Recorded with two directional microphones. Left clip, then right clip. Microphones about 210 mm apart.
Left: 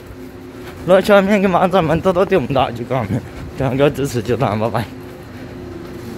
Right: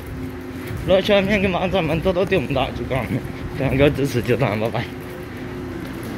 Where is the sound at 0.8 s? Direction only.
30° left (ahead or behind).